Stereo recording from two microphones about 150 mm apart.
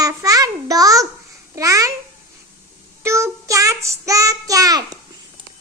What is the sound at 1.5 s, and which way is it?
Child singing, 20° right (ahead or behind).